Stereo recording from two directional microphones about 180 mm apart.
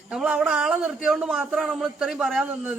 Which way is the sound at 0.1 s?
5° right (ahead or behind).